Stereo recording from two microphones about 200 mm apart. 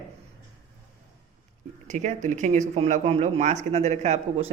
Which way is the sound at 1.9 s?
35° right (ahead or behind).